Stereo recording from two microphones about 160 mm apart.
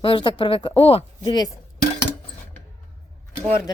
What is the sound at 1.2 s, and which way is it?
Speech, 25° left (ahead or behind).